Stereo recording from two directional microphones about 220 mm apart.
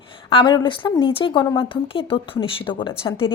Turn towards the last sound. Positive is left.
turn(degrees=20)  # may be behind; listen again after turning